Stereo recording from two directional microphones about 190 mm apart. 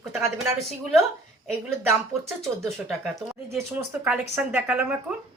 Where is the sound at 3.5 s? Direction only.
10° right (ahead or behind).